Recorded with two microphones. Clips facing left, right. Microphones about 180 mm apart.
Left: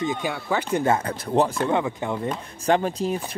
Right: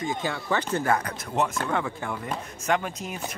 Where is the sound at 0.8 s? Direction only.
25° left (ahead or behind).